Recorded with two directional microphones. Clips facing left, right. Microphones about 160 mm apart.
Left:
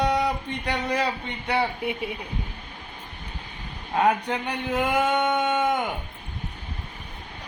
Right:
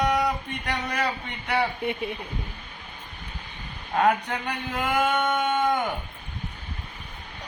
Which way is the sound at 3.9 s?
20° left (ahead or behind).